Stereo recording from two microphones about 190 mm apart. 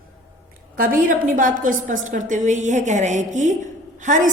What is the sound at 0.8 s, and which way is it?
A woman's voice, 45° right (ahead or behind).